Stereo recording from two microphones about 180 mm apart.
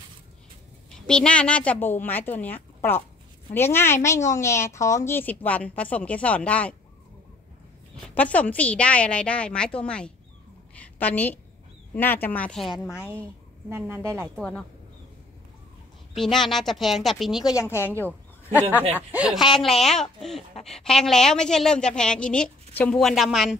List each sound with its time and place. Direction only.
1.0 s speech: 5° left (ahead or behind)
8.1 s a woman's voice: 10° left (ahead or behind)
12.7 s speech: 15° left (ahead or behind)
13.0 s a woman's voice: 10° right (ahead or behind)
14.3 s a woman's voice: 5° left (ahead or behind)
16.2 s a woman's voice: centre (ahead or behind)
17.5 s speech: 15° left (ahead or behind)
19.1 s a woman's voice: 5° right (ahead or behind)